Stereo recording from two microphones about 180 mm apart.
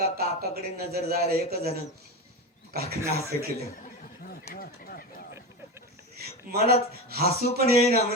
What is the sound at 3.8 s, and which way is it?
Snicker, 55° left (ahead or behind).